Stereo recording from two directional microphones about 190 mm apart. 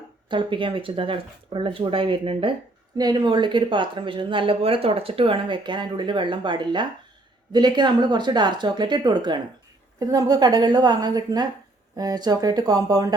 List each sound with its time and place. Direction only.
0.3 s speech: 25° right (ahead or behind)